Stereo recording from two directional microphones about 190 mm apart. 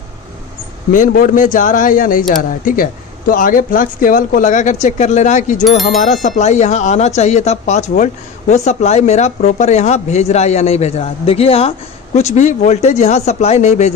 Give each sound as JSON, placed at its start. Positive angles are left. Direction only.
{"t": 0.9, "sound": "speech", "side_deg": 45}